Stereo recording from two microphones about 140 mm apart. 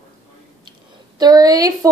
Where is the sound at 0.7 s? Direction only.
30° right (ahead or behind).